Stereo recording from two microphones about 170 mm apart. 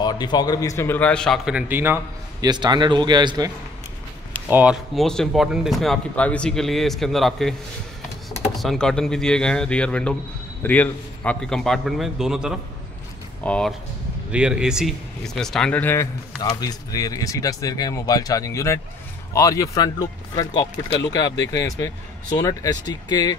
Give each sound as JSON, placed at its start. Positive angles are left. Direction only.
{"t": 0.0, "sound": "a man's voice", "side_deg": 25}
{"t": 2.4, "sound": "a man's voice", "side_deg": -25}
{"t": 4.5, "sound": "speech", "side_deg": -10}
{"t": 4.9, "sound": "speech", "side_deg": 5}
{"t": 8.5, "sound": "speech", "side_deg": 0}
{"t": 14.3, "sound": "speech", "side_deg": -5}